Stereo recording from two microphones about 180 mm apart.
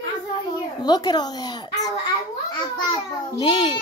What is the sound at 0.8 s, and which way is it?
A woman's voice, 25° left (ahead or behind).